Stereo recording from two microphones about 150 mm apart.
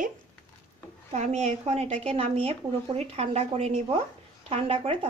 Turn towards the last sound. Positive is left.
turn(degrees=-40)  # may be behind; listen again after turning